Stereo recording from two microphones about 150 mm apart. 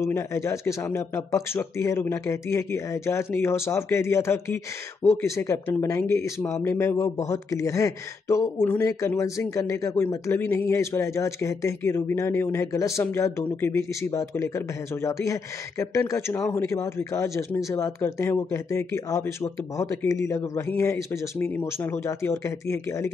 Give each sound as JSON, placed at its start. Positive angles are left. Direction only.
{"t": 0.0, "sound": "speech", "side_deg": 20}